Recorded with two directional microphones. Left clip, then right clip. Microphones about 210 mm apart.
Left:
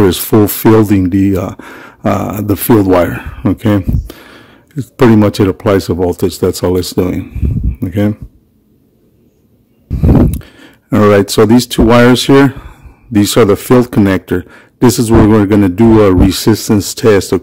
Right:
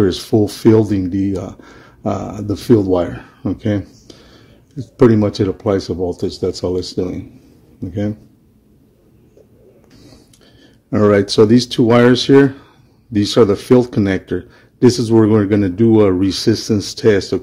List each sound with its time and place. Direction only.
0.1 s speech: 40° left (ahead or behind)
10.4 s speech: 35° left (ahead or behind)